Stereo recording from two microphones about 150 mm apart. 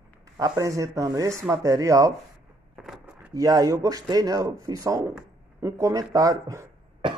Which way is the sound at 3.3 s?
25° right (ahead or behind).